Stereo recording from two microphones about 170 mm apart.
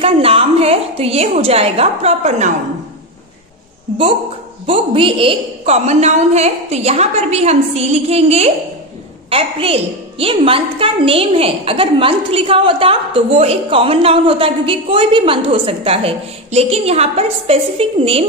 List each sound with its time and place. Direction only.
0.0 s a woman's voice: 35° right (ahead or behind)
4.6 s a woman's voice: 30° right (ahead or behind)